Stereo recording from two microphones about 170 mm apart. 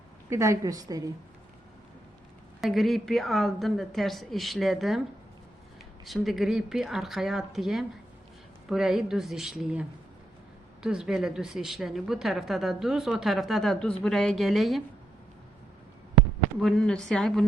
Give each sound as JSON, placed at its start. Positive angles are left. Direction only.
{"t": 0.3, "sound": "a woman's voice", "side_deg": -20}
{"t": 2.6, "sound": "a woman's voice", "side_deg": 0}
{"t": 6.1, "sound": "a woman's voice", "side_deg": 0}
{"t": 10.8, "sound": "a woman's voice", "side_deg": -5}
{"t": 16.6, "sound": "a woman's voice", "side_deg": 5}